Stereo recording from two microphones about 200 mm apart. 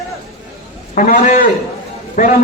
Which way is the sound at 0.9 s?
40° left (ahead or behind).